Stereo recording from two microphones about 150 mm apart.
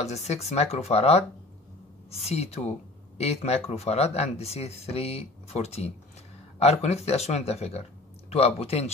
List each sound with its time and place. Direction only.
0.0 s speech: 45° left (ahead or behind)